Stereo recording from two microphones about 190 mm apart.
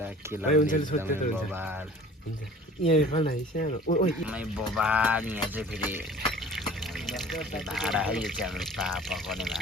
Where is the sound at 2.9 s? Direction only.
35° left (ahead or behind).